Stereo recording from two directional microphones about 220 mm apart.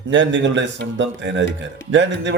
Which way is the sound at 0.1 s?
55° right (ahead or behind).